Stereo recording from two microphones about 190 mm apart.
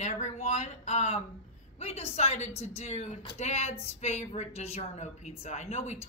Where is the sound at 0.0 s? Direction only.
40° left (ahead or behind).